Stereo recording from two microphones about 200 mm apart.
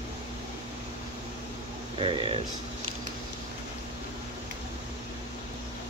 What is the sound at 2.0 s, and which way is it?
Speech, 25° right (ahead or behind).